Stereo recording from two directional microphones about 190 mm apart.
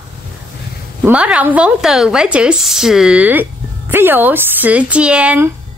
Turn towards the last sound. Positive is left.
turn(degrees=-5)  # may be behind; listen again after turning